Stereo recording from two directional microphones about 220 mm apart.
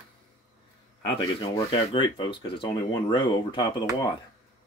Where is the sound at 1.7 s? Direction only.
20° left (ahead or behind).